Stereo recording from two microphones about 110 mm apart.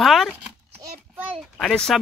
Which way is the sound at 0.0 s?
Centre (ahead or behind).